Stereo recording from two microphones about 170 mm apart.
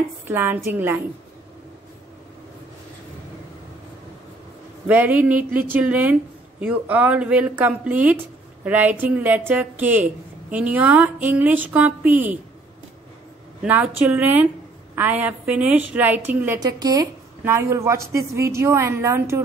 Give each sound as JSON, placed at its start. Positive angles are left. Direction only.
{"t": 0.3, "sound": "a woman's voice", "side_deg": -15}
{"t": 4.8, "sound": "a woman's voice", "side_deg": -10}
{"t": 13.6, "sound": "a woman's voice", "side_deg": -10}
{"t": 16.5, "sound": "a woman's voice", "side_deg": -20}